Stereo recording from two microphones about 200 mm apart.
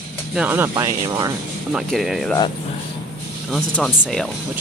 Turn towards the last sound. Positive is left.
turn(degrees=5)  # may be behind; listen again after turning